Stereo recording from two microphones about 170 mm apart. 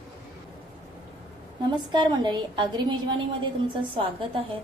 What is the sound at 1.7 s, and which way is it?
A woman's voice, 25° right (ahead or behind).